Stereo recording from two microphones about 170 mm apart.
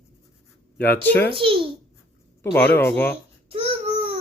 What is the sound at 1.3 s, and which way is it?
Speech, 30° right (ahead or behind).